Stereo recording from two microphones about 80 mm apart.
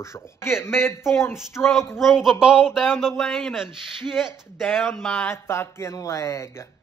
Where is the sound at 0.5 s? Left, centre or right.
Left.